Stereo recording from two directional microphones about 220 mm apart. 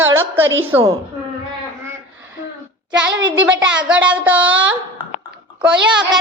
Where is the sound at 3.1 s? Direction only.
55° right (ahead or behind).